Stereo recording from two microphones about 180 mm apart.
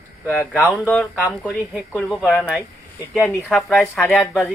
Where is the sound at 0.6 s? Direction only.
10° left (ahead or behind).